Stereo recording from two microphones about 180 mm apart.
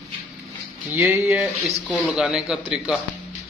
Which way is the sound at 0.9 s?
10° right (ahead or behind).